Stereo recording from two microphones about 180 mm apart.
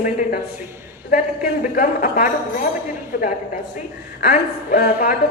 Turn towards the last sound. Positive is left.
turn(degrees=50)  # may be behind; listen again after turning